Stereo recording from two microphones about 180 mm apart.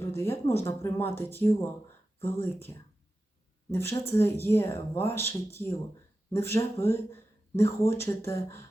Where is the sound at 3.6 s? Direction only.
15° left (ahead or behind).